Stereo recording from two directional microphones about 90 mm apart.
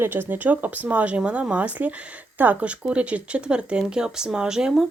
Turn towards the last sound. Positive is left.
turn(degrees=-5)  # may be behind; listen again after turning